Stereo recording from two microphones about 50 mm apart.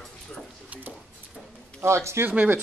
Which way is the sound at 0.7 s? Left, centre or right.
Right.